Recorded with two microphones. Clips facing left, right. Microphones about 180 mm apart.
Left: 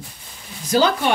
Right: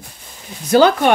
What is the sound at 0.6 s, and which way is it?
Speech, 60° right (ahead or behind).